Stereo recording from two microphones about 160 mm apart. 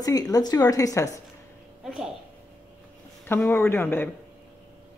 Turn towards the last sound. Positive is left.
turn(degrees=15)  # may be behind; listen again after turning